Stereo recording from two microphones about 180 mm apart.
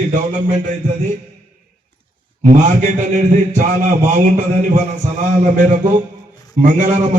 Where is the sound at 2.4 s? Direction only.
40° right (ahead or behind).